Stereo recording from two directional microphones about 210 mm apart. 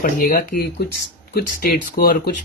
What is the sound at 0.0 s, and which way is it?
Speech, 40° left (ahead or behind).